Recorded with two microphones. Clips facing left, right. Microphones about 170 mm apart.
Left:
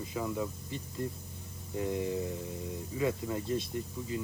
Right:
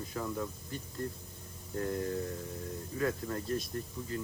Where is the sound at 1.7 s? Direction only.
5° left (ahead or behind).